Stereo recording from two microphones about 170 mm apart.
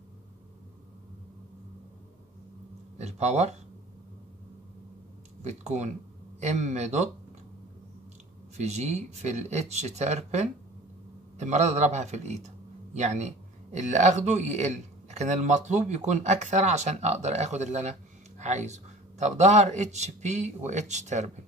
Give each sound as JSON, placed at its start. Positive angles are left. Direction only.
{"t": 3.0, "sound": "speech", "side_deg": -40}
{"t": 5.4, "sound": "a man's voice", "side_deg": -40}
{"t": 8.5, "sound": "a man's voice", "side_deg": -40}